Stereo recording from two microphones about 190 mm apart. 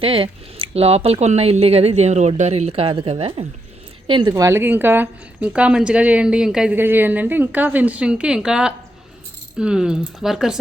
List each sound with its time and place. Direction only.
0.0 s a woman's voice: 30° right (ahead or behind); by 10.6 s centre (ahead or behind)